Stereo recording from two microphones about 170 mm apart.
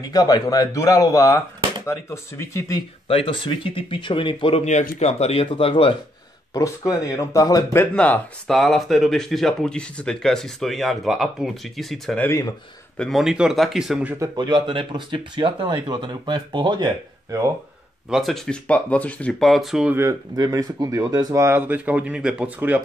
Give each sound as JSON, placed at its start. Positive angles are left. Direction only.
{"t": 0.0, "sound": "speech", "side_deg": 20}
{"t": 3.1, "sound": "speech", "side_deg": 35}
{"t": 6.5, "sound": "speech", "side_deg": 20}
{"t": 7.8, "sound": "speech", "side_deg": 10}
{"t": 12.3, "sound": "speech", "side_deg": 20}
{"t": 12.9, "sound": "speech", "side_deg": 0}
{"t": 14.1, "sound": "speech", "side_deg": -20}
{"t": 18.1, "sound": "speech", "side_deg": 0}